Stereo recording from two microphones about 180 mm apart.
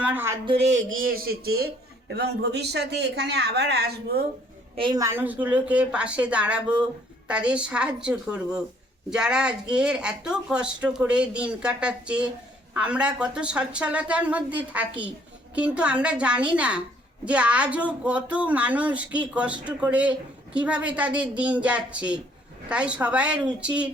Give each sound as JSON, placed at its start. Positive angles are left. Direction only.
{"t": 0.0, "sound": "speech", "side_deg": -10}
{"t": 0.4, "sound": "speech", "side_deg": -35}
{"t": 0.9, "sound": "a man's voice", "side_deg": -55}
{"t": 4.8, "sound": "a woman's voice", "side_deg": -20}